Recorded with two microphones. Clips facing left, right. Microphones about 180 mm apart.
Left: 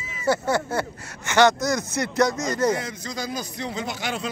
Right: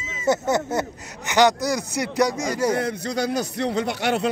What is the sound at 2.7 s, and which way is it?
Speech, 60° right (ahead or behind).